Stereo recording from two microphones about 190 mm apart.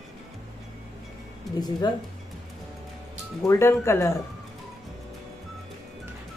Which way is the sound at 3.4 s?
15° left (ahead or behind).